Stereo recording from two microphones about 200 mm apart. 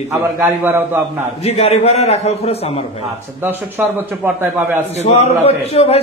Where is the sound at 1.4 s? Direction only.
30° left (ahead or behind).